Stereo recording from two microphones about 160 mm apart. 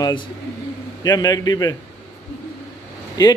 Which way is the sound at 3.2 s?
25° left (ahead or behind).